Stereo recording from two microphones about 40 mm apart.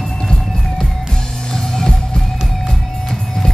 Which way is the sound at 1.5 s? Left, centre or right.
Centre.